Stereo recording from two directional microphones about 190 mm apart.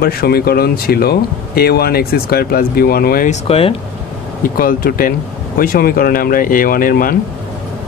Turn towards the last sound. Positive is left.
turn(degrees=50)  # may be behind; listen again after turning